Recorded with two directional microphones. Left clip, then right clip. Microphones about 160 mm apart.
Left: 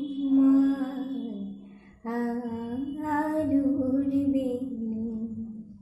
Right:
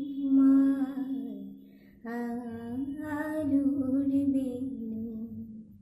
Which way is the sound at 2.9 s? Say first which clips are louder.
Left 9 dB; 20° right (ahead or behind).